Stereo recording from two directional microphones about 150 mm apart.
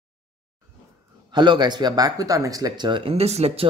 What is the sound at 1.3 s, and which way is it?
Speech, 30° right (ahead or behind).